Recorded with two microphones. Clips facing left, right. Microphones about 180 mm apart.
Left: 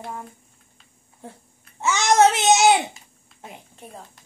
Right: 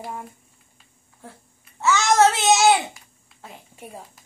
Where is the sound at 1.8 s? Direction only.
20° left (ahead or behind).